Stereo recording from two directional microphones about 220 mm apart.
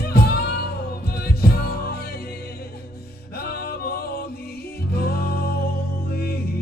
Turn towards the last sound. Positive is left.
turn(degrees=45)  # may be behind; listen again after turning